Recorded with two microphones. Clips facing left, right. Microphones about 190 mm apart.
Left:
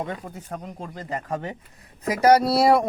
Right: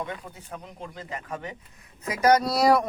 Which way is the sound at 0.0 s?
45° left (ahead or behind).